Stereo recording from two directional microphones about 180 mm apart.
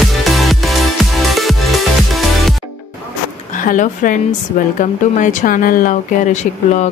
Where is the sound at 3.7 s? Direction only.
50° left (ahead or behind).